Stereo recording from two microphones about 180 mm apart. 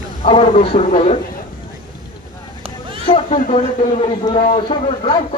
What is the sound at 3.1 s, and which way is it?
Cat, 30° left (ahead or behind).